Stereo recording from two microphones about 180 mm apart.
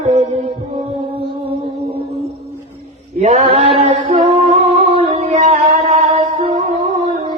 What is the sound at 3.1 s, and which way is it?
Chant, 40° right (ahead or behind).